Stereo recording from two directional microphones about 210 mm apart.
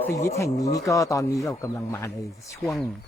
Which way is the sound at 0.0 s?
15° left (ahead or behind).